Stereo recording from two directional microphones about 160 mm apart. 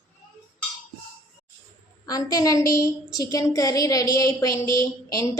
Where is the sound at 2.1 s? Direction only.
25° left (ahead or behind).